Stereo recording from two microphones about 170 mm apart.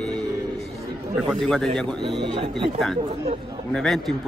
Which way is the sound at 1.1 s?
5° left (ahead or behind).